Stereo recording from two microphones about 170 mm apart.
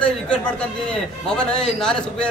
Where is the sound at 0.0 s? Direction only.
5° left (ahead or behind).